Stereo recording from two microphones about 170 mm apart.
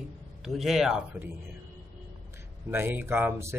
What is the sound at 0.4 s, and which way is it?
Speech, centre (ahead or behind).